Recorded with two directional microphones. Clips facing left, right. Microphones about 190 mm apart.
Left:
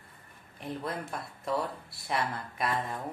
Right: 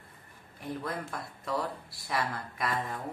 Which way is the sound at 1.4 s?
25° left (ahead or behind).